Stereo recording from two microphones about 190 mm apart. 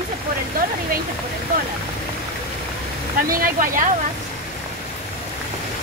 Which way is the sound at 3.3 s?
45° right (ahead or behind).